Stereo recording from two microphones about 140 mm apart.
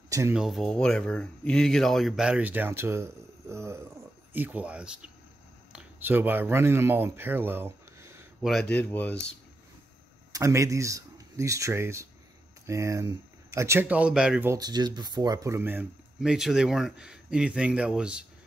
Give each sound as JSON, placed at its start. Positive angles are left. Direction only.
{"t": 0.3, "sound": "speech", "side_deg": 0}
{"t": 8.4, "sound": "speech", "side_deg": 0}
{"t": 10.3, "sound": "speech", "side_deg": -20}
{"t": 14.5, "sound": "speech", "side_deg": -30}
{"t": 16.2, "sound": "speech", "side_deg": -5}